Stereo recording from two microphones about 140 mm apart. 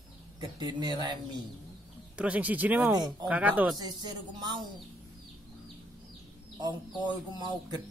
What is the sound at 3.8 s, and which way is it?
Speech, 30° right (ahead or behind).